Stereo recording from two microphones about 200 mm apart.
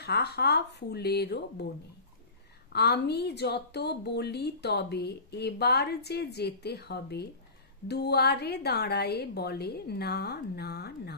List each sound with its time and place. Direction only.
0.0 s a woman's voice: 55° left (ahead or behind)
2.7 s a woman's voice: 55° left (ahead or behind)